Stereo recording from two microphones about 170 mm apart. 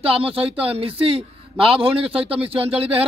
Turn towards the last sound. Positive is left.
turn(degrees=-35)  # may be behind; listen again after turning